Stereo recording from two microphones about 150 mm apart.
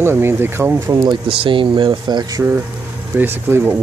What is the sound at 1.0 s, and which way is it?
Speech, 35° right (ahead or behind).